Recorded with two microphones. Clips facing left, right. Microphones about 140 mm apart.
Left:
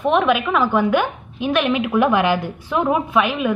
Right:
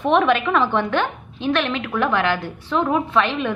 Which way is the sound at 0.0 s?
5° left (ahead or behind).